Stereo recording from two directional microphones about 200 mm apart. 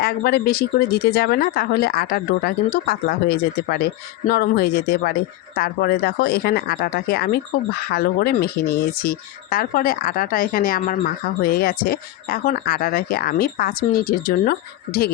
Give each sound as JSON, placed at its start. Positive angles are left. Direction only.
{"t": 0.0, "sound": "speech", "side_deg": 50}